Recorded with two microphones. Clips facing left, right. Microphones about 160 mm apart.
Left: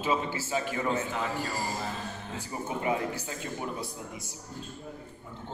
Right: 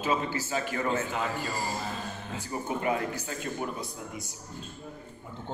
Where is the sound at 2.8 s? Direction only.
20° left (ahead or behind).